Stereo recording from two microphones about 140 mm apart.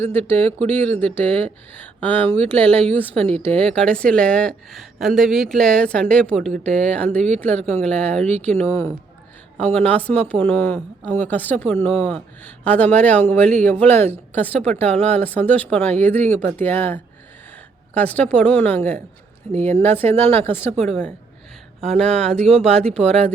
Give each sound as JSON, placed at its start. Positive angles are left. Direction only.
{"t": 0.0, "sound": "speech", "side_deg": 15}
{"t": 21.9, "sound": "speech", "side_deg": 5}
{"t": 22.3, "sound": "speech", "side_deg": -50}
{"t": 22.6, "sound": "speech", "side_deg": 5}